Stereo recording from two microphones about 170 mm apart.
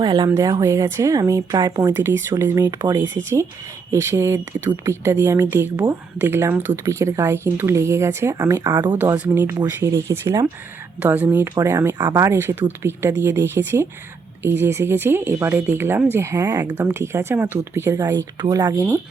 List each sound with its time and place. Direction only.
0.0 s speech: 25° right (ahead or behind)
3.9 s speech: 15° right (ahead or behind)
9.0 s speech: 10° right (ahead or behind)